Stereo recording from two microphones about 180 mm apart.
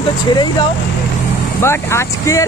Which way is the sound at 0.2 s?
25° left (ahead or behind).